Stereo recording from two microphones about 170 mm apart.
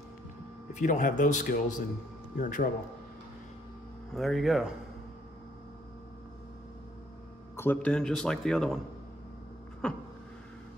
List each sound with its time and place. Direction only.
0.7 s a man's voice: 50° left (ahead or behind)
4.1 s speech: centre (ahead or behind)
7.5 s speech: 10° left (ahead or behind)
9.8 s speech: 5° left (ahead or behind)